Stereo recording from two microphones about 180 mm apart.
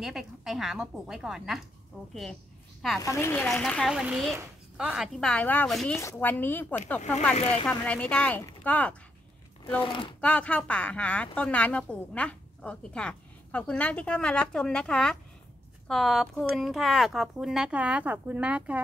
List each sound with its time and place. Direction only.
0.0 s speech: centre (ahead or behind)
3.0 s a woman's voice: 15° left (ahead or behind)
3.4 s a woman's voice: 5° left (ahead or behind)
7.3 s speech: 35° left (ahead or behind)
7.6 s a woman's voice: 10° left (ahead or behind)
9.8 s speech: 30° left (ahead or behind)
10.2 s a woman's voice: 5° left (ahead or behind)